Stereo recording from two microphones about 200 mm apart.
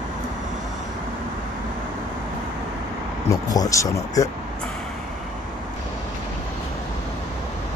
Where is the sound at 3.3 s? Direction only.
20° left (ahead or behind).